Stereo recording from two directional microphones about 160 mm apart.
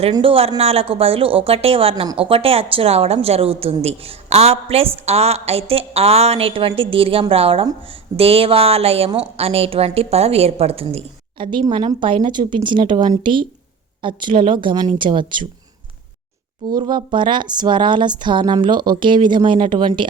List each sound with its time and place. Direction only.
0.1 s a woman's voice: 35° right (ahead or behind)
11.6 s a woman's voice: 25° right (ahead or behind)
16.6 s speech: 25° right (ahead or behind)